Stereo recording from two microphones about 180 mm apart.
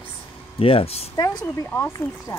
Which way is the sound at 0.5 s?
30° left (ahead or behind).